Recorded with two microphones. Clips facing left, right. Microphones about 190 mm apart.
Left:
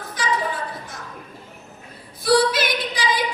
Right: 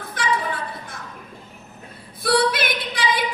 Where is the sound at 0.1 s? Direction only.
55° right (ahead or behind).